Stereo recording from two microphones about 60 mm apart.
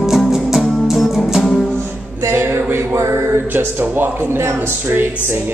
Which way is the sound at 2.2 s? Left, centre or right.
Right.